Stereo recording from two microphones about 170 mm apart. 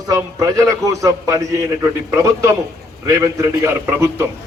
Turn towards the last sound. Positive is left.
turn(degrees=-15)  # may be behind; listen again after turning